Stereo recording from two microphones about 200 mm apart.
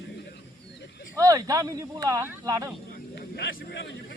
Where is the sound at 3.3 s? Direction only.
60° left (ahead or behind).